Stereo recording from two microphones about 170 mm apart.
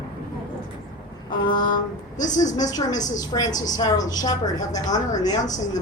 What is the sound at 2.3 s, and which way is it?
A woman's voice, 20° left (ahead or behind).